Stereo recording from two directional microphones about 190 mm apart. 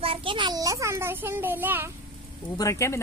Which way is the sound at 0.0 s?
30° right (ahead or behind).